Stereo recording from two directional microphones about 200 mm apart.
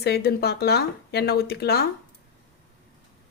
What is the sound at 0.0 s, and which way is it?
Speech, 55° left (ahead or behind).